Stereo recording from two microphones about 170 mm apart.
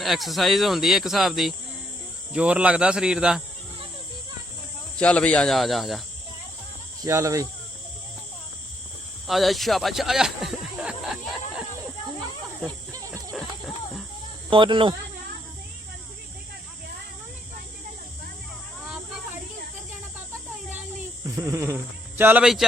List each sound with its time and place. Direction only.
0.0 s speech: centre (ahead or behind)
4.9 s speech: 5° left (ahead or behind)
7.0 s speech: 20° right (ahead or behind)
9.2 s snake: centre (ahead or behind)
14.5 s speech: 30° right (ahead or behind)
21.3 s speech: 15° right (ahead or behind)